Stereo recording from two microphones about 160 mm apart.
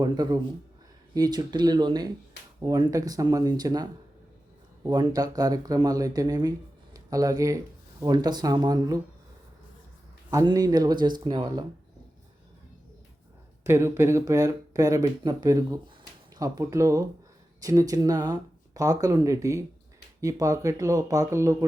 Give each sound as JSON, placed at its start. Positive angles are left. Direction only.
{"t": 0.0, "sound": "speech", "side_deg": -25}
{"t": 4.9, "sound": "speech", "side_deg": -25}
{"t": 10.4, "sound": "speech", "side_deg": -25}
{"t": 13.7, "sound": "speech", "side_deg": -15}